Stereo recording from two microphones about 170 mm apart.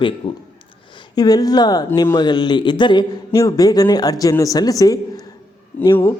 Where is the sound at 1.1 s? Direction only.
25° left (ahead or behind).